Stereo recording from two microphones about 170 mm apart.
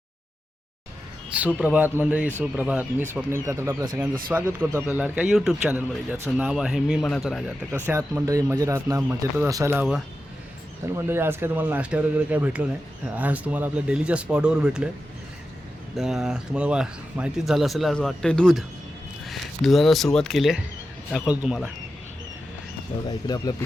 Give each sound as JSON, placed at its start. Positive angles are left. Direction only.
{"t": 1.5, "sound": "speech", "side_deg": -10}
{"t": 16.0, "sound": "speech", "side_deg": 0}
{"t": 23.0, "sound": "speech", "side_deg": 25}